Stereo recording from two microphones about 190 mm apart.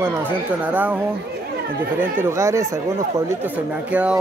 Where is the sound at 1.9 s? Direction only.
10° right (ahead or behind).